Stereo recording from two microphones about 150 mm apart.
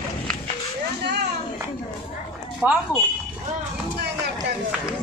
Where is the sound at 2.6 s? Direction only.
10° right (ahead or behind).